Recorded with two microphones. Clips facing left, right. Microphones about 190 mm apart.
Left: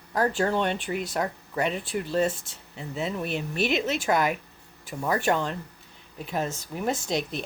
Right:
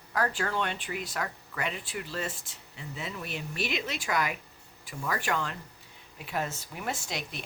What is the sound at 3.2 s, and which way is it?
Speech, 55° left (ahead or behind).